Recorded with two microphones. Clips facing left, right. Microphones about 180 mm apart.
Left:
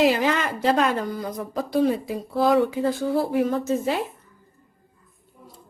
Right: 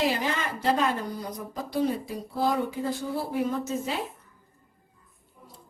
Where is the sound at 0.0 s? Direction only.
80° left.